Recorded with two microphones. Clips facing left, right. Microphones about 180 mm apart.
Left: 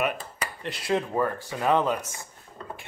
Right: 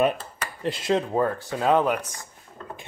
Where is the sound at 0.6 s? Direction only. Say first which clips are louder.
Right 4 dB; 25° right (ahead or behind).